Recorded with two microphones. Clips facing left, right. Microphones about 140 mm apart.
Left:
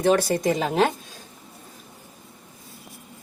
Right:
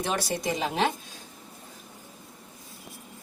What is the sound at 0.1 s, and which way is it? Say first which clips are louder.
Speech: left 10 dB; 50° left (ahead or behind).